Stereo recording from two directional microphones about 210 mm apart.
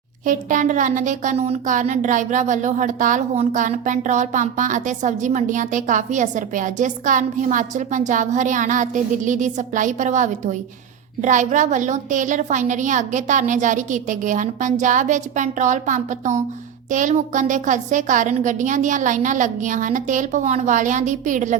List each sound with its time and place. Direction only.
0.3 s speech: 40° right (ahead or behind)